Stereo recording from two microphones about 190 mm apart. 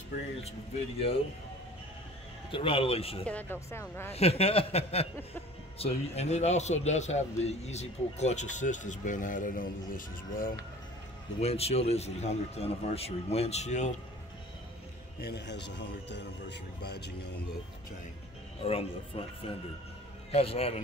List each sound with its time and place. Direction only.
0.4 s a man's voice: 30° left (ahead or behind)
2.5 s speech: 30° left (ahead or behind)
3.3 s speech: 10° left (ahead or behind)
4.1 s a man's voice: 30° left (ahead or behind)
11.3 s a man's voice: 35° left (ahead or behind)
15.1 s speech: 60° left (ahead or behind)
18.6 s a man's voice: 30° left (ahead or behind)